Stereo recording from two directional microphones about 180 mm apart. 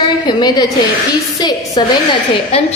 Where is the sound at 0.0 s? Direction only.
25° left (ahead or behind).